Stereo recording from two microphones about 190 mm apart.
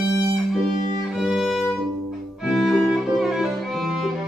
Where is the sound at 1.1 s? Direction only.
Centre (ahead or behind).